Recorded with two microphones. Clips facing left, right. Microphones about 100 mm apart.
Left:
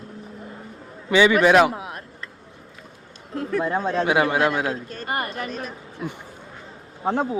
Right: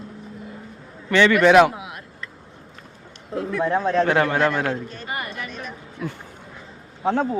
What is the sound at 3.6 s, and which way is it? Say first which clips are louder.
A man's voice: right 4 dB; 5° left (ahead or behind).